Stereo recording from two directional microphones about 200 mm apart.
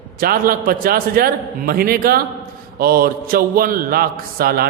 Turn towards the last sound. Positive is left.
turn(degrees=-50)  # may be behind; listen again after turning